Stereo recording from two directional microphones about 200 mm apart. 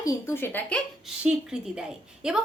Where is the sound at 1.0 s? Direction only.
5° right (ahead or behind).